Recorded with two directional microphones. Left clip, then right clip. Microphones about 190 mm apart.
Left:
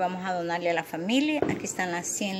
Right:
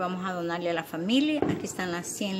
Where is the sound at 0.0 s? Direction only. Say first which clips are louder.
Left 3 dB; 5° right (ahead or behind).